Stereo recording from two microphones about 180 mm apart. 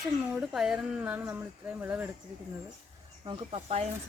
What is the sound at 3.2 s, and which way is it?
Speech, 35° right (ahead or behind).